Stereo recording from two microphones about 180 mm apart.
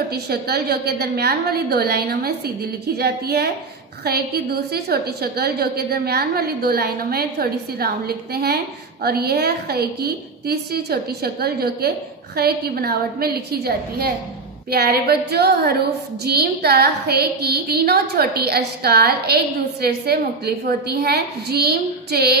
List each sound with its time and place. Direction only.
0.1 s a woman's voice: 60° right (ahead or behind)